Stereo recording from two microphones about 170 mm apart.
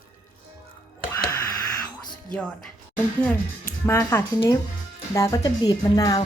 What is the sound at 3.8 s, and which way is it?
A woman's voice, 15° left (ahead or behind).